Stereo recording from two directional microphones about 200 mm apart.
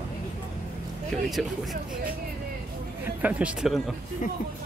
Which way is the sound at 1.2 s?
Centre (ahead or behind).